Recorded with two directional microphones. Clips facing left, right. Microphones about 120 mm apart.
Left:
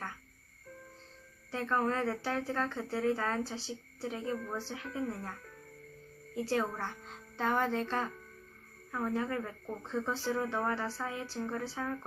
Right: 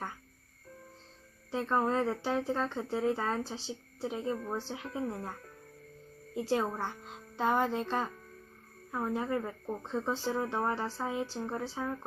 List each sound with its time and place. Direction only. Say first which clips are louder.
1.5 s speech: right 2 dB; 20° right (ahead or behind)